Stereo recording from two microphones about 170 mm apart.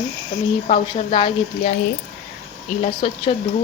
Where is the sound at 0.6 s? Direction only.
25° left (ahead or behind).